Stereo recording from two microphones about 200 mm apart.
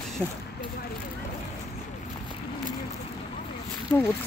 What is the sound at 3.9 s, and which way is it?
Speech, 10° left (ahead or behind).